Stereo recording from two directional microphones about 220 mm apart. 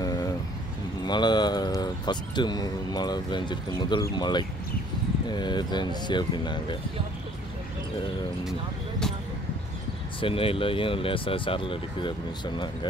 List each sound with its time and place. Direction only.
0.0 s vehicle: 15° left (ahead or behind)
1.0 s speech: 20° left (ahead or behind)
10.2 s speech: 25° left (ahead or behind)